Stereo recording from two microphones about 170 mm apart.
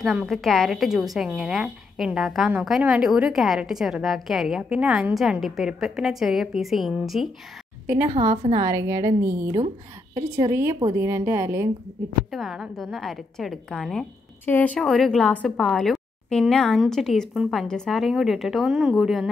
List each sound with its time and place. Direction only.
0.0 s a woman's voice: centre (ahead or behind)
12.3 s a woman's voice: centre (ahead or behind)